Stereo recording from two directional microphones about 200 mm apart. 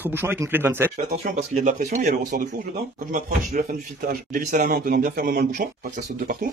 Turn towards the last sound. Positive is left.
turn(degrees=-45)  # may be behind; listen again after turning